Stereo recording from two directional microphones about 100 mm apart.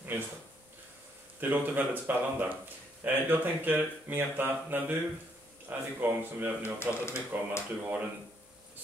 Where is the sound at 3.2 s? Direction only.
20° right (ahead or behind).